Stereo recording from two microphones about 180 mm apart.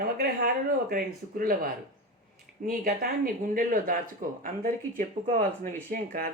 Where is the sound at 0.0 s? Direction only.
60° right (ahead or behind).